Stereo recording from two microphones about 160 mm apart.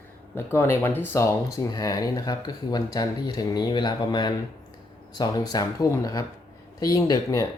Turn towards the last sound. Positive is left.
turn(degrees=20)  # may be behind; listen again after turning